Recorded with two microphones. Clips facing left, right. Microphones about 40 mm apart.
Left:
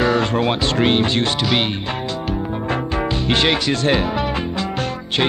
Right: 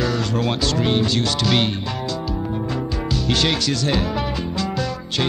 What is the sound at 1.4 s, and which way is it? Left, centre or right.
Music, centre.